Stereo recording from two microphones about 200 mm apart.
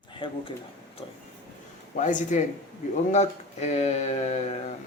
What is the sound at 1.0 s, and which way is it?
Vehicle, 25° left (ahead or behind).